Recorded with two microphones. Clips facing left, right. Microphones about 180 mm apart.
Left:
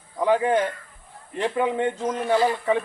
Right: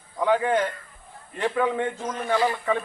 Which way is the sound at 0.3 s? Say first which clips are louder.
Left 2 dB; 20° left (ahead or behind).